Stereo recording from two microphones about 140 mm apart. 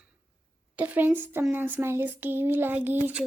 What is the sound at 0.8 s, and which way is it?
A woman's voice, 10° right (ahead or behind).